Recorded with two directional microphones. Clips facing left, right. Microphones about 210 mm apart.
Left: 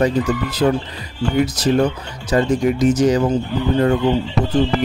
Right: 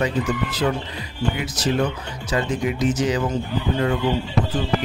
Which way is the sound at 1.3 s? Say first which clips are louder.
Left 9 dB; 45° left (ahead or behind).